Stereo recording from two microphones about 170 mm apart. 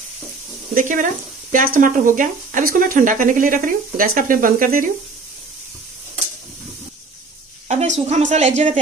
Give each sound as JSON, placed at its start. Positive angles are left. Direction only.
{"t": 0.7, "sound": "speech", "side_deg": -50}
{"t": 7.6, "sound": "a woman's voice", "side_deg": -45}